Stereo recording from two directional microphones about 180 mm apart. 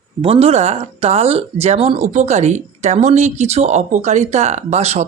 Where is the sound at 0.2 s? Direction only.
35° right (ahead or behind).